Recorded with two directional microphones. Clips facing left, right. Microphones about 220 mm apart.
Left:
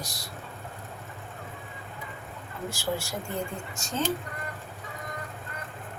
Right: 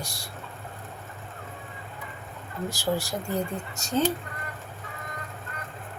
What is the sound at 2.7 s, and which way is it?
Speech, 35° right (ahead or behind).